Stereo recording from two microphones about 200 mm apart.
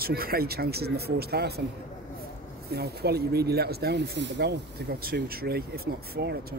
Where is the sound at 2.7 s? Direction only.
55° right (ahead or behind).